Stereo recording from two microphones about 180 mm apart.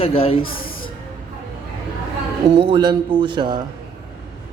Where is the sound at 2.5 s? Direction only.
25° right (ahead or behind).